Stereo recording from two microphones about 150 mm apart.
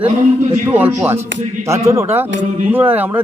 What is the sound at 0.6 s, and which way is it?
A man's voice, 10° right (ahead or behind).